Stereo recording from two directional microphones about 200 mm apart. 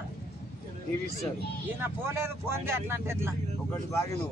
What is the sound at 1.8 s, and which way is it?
A man's voice, 10° right (ahead or behind).